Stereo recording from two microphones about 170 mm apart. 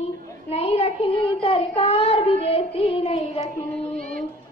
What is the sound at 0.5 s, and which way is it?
Child singing, 35° left (ahead or behind).